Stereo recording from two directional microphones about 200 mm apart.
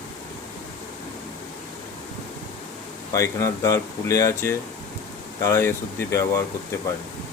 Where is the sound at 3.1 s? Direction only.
15° left (ahead or behind).